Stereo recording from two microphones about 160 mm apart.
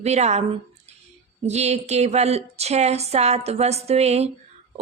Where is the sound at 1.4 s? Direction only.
45° right (ahead or behind).